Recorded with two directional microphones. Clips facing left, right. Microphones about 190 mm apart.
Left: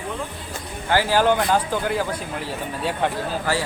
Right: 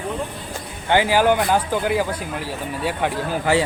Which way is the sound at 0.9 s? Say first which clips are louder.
Right 2 dB; 15° right (ahead or behind).